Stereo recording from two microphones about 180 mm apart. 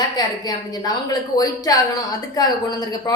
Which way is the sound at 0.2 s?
20° left (ahead or behind).